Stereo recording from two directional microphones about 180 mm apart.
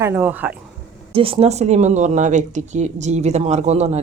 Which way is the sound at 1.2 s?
30° right (ahead or behind).